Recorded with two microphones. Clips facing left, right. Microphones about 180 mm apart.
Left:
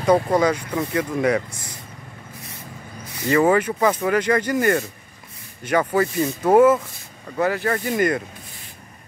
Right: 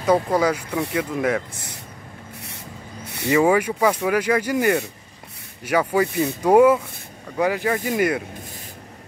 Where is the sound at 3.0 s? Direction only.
70° right (ahead or behind).